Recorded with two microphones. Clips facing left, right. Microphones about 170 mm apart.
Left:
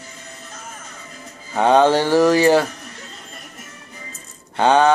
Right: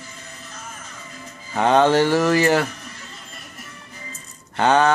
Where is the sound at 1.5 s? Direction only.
10° left (ahead or behind).